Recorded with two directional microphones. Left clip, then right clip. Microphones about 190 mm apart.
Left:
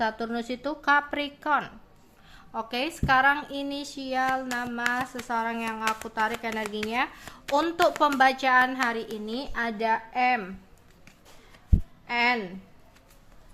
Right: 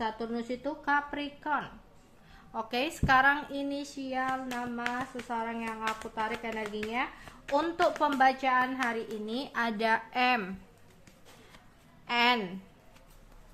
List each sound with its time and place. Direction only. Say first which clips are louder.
0.0 s a child's voice: left 6 dB; 45° left (ahead or behind)
2.5 s a child's voice: left 2 dB; 15° left (ahead or behind)
12.0 s speech: left 2 dB; 5° left (ahead or behind)